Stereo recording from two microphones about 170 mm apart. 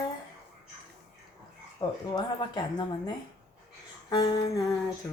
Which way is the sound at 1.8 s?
25° left (ahead or behind).